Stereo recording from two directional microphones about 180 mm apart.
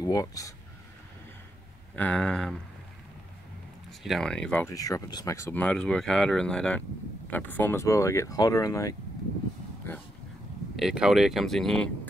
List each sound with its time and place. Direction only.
0.0 s speech: 20° left (ahead or behind)
2.0 s speech: 5° left (ahead or behind)
4.0 s speech: centre (ahead or behind); by 8.9 s 20° left (ahead or behind)
10.8 s speech: 5° right (ahead or behind)